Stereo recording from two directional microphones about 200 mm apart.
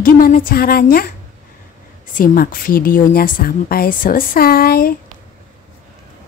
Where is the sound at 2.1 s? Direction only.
45° left (ahead or behind).